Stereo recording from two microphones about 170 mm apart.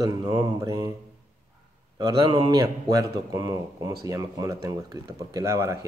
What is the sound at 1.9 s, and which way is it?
Speech, 25° right (ahead or behind).